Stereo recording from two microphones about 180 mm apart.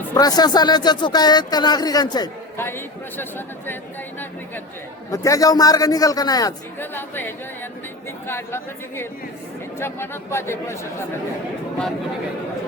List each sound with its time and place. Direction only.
0.1 s speech: 20° left (ahead or behind)
5.1 s speech: 20° left (ahead or behind)